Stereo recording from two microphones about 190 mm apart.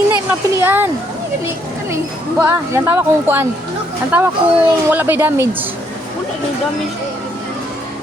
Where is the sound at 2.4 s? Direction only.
15° right (ahead or behind).